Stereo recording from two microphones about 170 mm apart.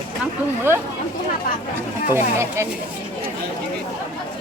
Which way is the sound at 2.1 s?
15° right (ahead or behind).